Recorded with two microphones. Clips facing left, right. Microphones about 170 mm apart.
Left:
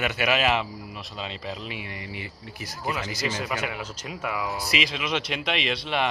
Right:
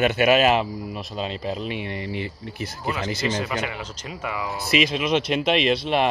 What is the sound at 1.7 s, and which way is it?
Speech, 30° right (ahead or behind).